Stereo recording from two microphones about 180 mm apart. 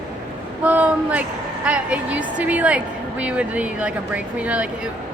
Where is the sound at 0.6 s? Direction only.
10° right (ahead or behind).